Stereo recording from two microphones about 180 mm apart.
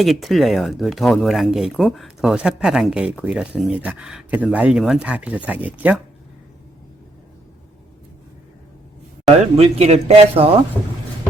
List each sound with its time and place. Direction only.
0.0 s speech: centre (ahead or behind)
9.6 s speech: 35° right (ahead or behind)